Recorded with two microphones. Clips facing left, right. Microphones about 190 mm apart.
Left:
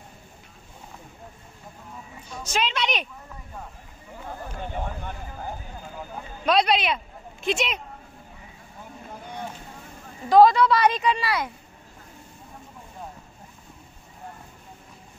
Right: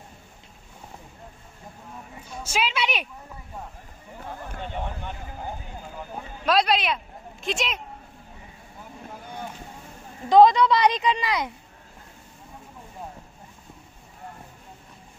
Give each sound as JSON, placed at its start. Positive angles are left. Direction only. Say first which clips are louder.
{"t": 2.4, "sound": "a woman's voice", "louder": "even", "side_deg": -5}
{"t": 4.6, "sound": "speech", "louder": "left 1 dB", "side_deg": 10}
{"t": 6.4, "sound": "speech", "louder": "left 1 dB", "side_deg": 0}
{"t": 10.3, "sound": "a woman's voice", "louder": "even", "side_deg": -20}